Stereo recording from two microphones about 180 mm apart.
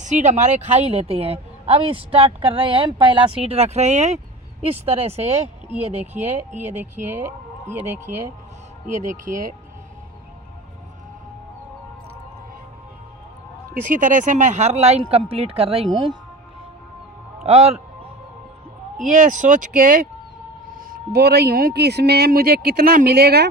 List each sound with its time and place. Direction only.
0.0 s speech: 40° right (ahead or behind)
7.7 s speech: 10° right (ahead or behind)
9.0 s speech: 50° right (ahead or behind)
13.8 s speech: 45° right (ahead or behind); by 16.1 s 30° right (ahead or behind)
17.4 s music: 35° right (ahead or behind)
18.9 s speech: 45° right (ahead or behind); by 23.5 s 60° right (ahead or behind)